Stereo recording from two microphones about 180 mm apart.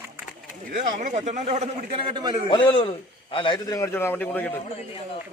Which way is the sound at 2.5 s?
30° left (ahead or behind).